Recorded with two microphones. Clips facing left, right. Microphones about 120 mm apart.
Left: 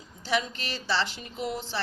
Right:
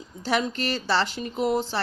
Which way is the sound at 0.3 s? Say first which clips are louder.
Right 5 dB; 45° right (ahead or behind).